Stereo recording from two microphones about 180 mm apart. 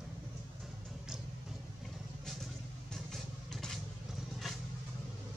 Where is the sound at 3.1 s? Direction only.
Centre (ahead or behind).